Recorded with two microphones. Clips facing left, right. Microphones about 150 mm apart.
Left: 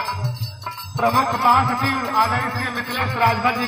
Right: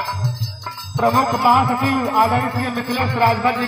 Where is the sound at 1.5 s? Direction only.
25° right (ahead or behind).